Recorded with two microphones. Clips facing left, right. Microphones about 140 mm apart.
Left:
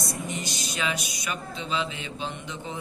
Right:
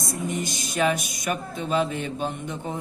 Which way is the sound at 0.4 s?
50° right (ahead or behind).